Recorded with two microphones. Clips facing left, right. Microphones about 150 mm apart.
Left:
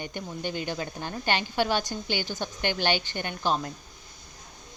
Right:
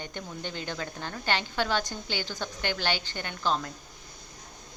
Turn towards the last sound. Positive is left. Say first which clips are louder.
# left 2 dB
turn(degrees=15)  # may be behind; listen again after turning